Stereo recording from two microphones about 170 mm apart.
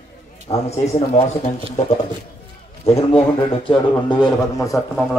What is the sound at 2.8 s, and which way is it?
A man's voice, 35° left (ahead or behind).